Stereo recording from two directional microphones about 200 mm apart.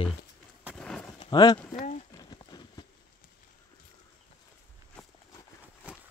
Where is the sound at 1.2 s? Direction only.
20° left (ahead or behind).